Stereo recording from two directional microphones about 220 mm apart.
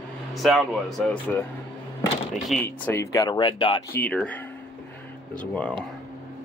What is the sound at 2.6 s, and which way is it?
Speech, 10° left (ahead or behind).